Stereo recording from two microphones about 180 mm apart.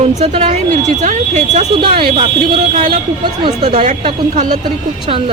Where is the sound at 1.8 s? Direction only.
30° right (ahead or behind).